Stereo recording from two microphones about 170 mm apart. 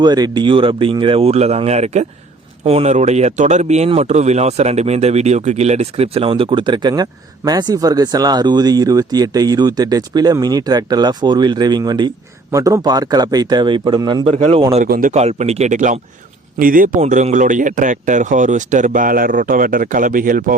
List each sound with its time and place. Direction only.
0.0 s speech: 25° right (ahead or behind)
14.8 s speech: 60° right (ahead or behind)
15.1 s speech: 40° right (ahead or behind); by 16.9 s 55° right (ahead or behind)
17.0 s speech: 45° right (ahead or behind)